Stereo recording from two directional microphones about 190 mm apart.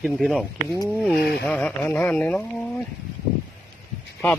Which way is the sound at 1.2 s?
55° left (ahead or behind).